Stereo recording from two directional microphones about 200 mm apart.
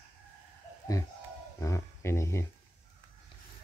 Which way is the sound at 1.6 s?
15° left (ahead or behind).